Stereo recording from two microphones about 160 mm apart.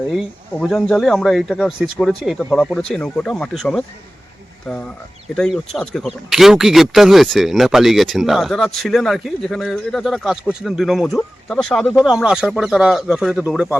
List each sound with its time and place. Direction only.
0.6 s speech: centre (ahead or behind)